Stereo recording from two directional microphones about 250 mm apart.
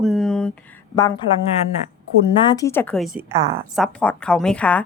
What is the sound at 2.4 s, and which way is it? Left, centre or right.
A woman's voice, centre.